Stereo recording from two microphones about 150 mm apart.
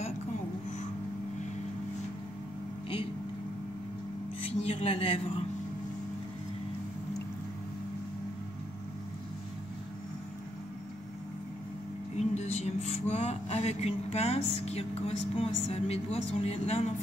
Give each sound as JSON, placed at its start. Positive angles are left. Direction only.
{"t": 4.5, "sound": "speech", "side_deg": 40}
{"t": 12.2, "sound": "music", "side_deg": 45}
{"t": 13.1, "sound": "speech", "side_deg": 45}